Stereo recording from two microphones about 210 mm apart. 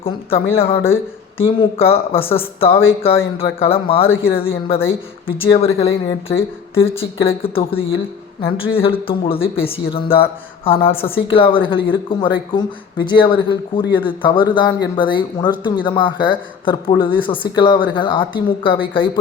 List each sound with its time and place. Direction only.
0.0 s speech: 25° left (ahead or behind)